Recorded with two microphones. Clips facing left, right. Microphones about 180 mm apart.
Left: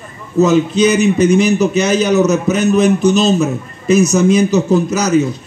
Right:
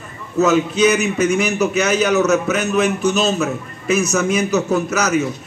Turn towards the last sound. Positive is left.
turn(degrees=35)  # may be behind; listen again after turning